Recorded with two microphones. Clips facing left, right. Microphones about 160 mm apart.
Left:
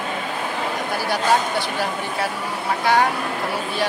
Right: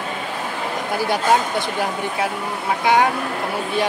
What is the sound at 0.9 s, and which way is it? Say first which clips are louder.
Speech: right 5 dB; 25° right (ahead or behind).